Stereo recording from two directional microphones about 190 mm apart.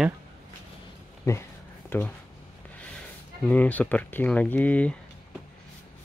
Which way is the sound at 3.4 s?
10° left (ahead or behind).